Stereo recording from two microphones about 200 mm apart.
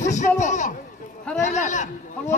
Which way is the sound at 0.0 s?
35° left (ahead or behind).